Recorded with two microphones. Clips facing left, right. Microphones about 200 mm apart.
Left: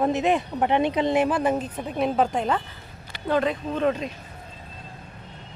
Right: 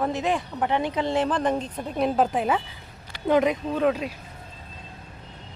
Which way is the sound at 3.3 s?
15° right (ahead or behind).